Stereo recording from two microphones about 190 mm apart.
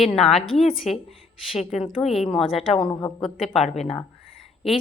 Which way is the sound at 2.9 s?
25° left (ahead or behind).